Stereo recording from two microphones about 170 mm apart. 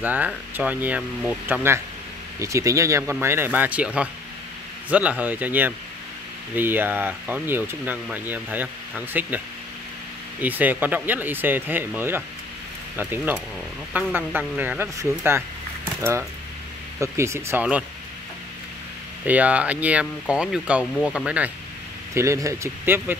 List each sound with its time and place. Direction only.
0.0 s speech: 10° right (ahead or behind)
10.4 s speech: 10° right (ahead or behind)
19.2 s speech: 10° right (ahead or behind)
22.1 s speech: 15° right (ahead or behind)